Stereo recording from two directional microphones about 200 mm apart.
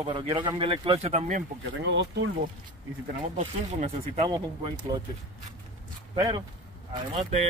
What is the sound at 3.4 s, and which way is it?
Speech, 35° right (ahead or behind).